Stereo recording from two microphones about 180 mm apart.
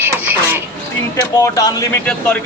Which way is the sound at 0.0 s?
15° right (ahead or behind).